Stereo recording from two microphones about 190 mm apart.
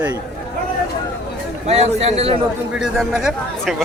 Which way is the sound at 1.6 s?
35° right (ahead or behind).